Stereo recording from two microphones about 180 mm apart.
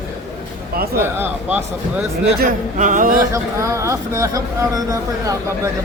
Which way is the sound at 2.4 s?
50° right (ahead or behind).